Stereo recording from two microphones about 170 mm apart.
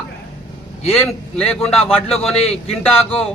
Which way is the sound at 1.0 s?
5° left (ahead or behind).